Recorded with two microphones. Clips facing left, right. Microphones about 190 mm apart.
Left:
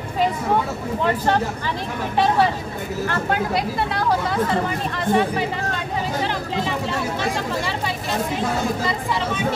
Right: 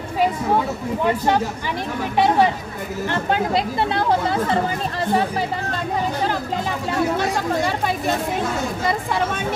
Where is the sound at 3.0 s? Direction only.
25° right (ahead or behind).